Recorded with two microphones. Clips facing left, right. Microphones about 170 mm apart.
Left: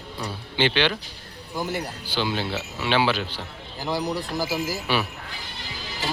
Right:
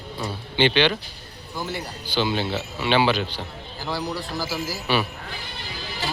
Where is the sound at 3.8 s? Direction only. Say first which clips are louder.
Left 2 dB; 15° left (ahead or behind).